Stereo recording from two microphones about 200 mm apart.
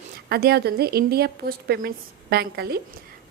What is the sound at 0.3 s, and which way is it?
A woman's voice, 50° right (ahead or behind).